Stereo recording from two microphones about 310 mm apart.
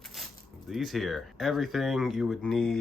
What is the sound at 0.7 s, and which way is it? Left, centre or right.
Speech, centre.